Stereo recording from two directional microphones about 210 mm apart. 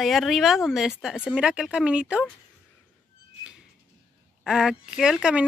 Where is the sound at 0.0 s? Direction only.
Centre (ahead or behind).